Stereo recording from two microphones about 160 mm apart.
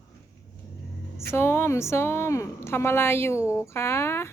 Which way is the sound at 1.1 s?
15° left (ahead or behind).